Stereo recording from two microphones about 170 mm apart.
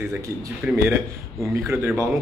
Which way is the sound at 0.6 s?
10° right (ahead or behind).